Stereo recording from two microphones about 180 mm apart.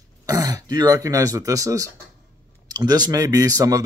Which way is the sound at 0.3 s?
20° right (ahead or behind).